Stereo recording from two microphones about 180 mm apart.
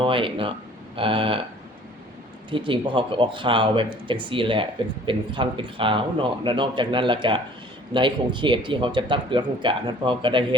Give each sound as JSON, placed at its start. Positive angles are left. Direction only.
{"t": 0.0, "sound": "speech", "side_deg": -30}
{"t": 2.5, "sound": "speech", "side_deg": -25}